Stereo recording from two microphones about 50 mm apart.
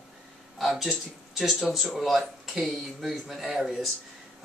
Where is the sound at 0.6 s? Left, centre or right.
Centre.